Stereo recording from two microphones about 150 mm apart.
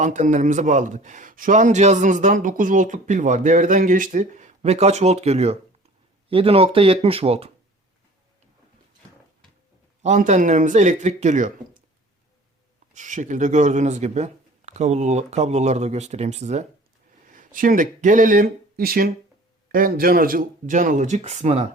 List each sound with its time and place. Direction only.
0.0 s speech: 55° right (ahead or behind)
10.0 s speech: 55° right (ahead or behind)
12.9 s speech: 55° right (ahead or behind)
17.2 s speech: 65° right (ahead or behind); by 21.7 s 45° right (ahead or behind)